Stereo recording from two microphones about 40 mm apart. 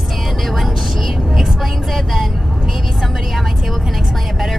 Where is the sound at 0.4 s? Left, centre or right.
Centre.